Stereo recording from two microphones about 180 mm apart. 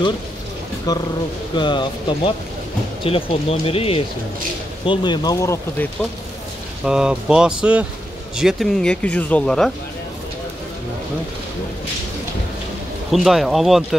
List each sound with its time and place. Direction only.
0.9 s speech: 20° left (ahead or behind)
6.8 s speech: 5° right (ahead or behind)
13.1 s speech: centre (ahead or behind)